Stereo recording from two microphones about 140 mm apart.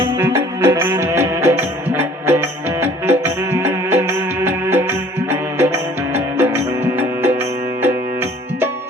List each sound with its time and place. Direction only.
0.0 s music: 20° right (ahead or behind)